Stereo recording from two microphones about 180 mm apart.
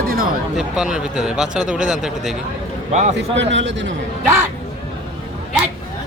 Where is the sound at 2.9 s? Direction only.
40° right (ahead or behind).